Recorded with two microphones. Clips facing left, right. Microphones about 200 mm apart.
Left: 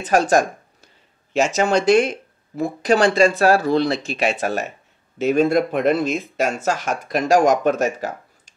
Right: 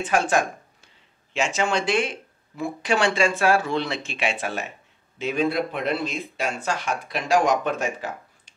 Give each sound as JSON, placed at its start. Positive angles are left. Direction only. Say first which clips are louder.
{"t": 0.0, "sound": "speech", "louder": "left 5 dB", "side_deg": 40}